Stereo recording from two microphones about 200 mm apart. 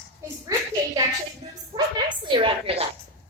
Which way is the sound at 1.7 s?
25° right (ahead or behind).